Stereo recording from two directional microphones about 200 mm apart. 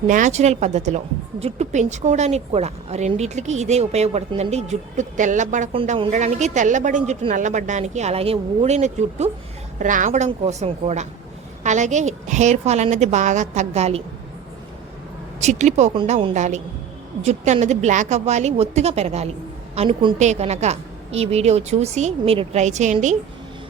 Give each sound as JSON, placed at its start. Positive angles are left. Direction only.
{"t": 0.1, "sound": "a woman's voice", "side_deg": -35}
{"t": 15.4, "sound": "a woman's voice", "side_deg": -35}